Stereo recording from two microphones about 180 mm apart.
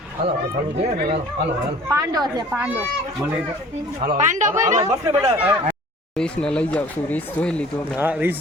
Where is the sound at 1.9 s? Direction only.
20° right (ahead or behind).